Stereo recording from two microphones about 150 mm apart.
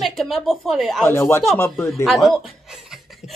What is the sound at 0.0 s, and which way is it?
A woman's voice, centre (ahead or behind).